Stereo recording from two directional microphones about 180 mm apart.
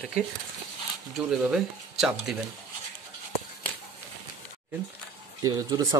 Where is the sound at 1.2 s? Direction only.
5° right (ahead or behind).